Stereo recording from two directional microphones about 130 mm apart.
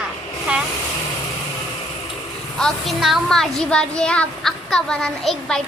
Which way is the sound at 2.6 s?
Centre (ahead or behind).